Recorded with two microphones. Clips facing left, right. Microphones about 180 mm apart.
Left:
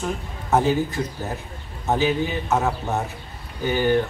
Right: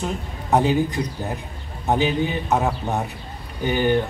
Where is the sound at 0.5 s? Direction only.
15° right (ahead or behind).